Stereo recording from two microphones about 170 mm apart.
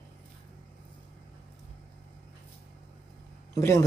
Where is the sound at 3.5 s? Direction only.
20° left (ahead or behind).